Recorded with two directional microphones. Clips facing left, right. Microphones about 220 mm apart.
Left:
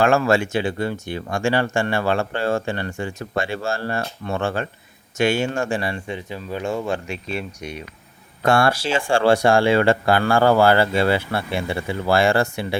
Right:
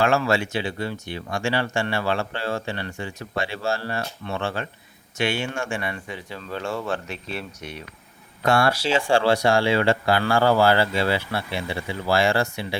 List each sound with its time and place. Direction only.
0.0 s speech: 50° left (ahead or behind); by 7.8 s 15° left (ahead or behind)
8.4 s speech: 50° left (ahead or behind)